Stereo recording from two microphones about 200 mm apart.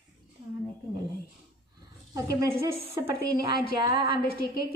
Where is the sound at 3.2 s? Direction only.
50° left (ahead or behind).